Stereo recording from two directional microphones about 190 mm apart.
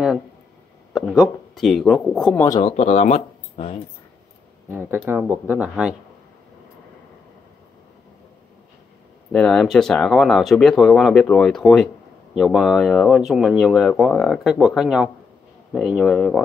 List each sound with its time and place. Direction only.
0.9 s speech: centre (ahead or behind)
2.4 s speech: 20° left (ahead or behind)
2.7 s speech: 35° left (ahead or behind)
4.6 s speech: 10° right (ahead or behind)
9.3 s speech: 5° left (ahead or behind)